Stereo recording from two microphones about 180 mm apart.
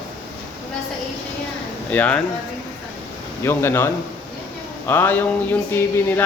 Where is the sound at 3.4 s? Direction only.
15° left (ahead or behind).